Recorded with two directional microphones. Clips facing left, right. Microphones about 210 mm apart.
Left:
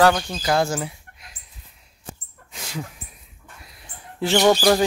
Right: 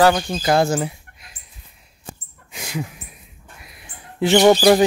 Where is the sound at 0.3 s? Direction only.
25° right (ahead or behind).